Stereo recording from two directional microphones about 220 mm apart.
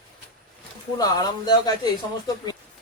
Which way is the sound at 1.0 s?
20° left (ahead or behind).